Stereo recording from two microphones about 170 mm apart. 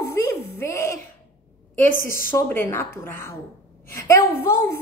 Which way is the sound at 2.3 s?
15° left (ahead or behind).